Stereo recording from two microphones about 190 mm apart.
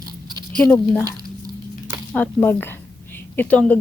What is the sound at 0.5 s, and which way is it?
Speech, 5° left (ahead or behind).